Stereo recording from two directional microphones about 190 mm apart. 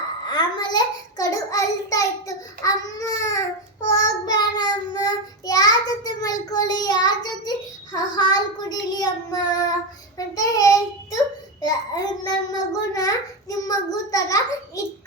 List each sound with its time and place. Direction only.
0.3 s child singing: 20° left (ahead or behind)
7.9 s a child's voice: 20° left (ahead or behind)